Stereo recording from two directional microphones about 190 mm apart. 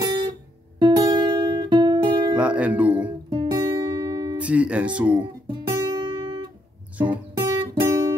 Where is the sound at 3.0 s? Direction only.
25° right (ahead or behind).